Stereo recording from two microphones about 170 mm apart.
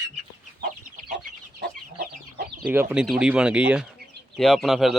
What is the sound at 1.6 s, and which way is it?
Chicken, 70° right (ahead or behind).